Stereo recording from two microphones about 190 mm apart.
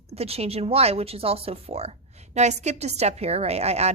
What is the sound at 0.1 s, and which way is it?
Speech, 30° right (ahead or behind).